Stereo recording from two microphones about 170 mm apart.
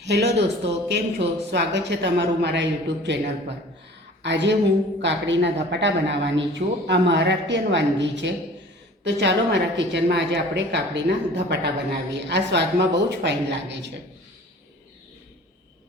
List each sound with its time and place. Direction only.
0.0 s speech: 75° right (ahead or behind)
4.2 s a woman's voice: 90° right
11.4 s speech: 80° right